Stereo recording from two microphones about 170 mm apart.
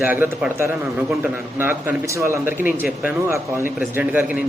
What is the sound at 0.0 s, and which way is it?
A man's voice, 10° right (ahead or behind).